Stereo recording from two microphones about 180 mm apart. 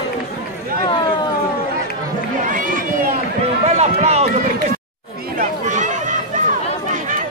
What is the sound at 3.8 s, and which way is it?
Run, 35° right (ahead or behind).